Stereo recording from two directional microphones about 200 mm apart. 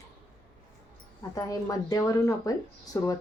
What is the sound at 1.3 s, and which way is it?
Speech, 15° left (ahead or behind).